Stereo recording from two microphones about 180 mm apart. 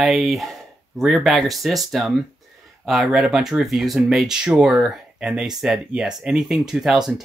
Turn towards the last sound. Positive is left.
turn(degrees=-5)  # may be behind; listen again after turning